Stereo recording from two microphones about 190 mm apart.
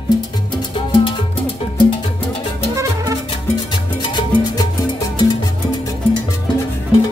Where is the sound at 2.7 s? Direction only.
15° right (ahead or behind).